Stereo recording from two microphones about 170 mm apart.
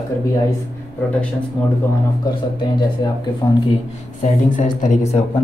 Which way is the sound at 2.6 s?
25° left (ahead or behind).